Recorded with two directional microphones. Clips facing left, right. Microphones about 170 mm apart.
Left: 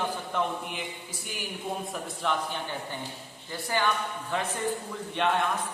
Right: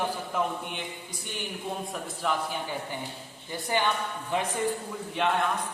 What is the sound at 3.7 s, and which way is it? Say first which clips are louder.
Speech: even; 20° right (ahead or behind).